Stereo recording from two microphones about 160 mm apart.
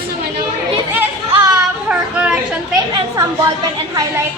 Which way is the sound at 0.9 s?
10° right (ahead or behind).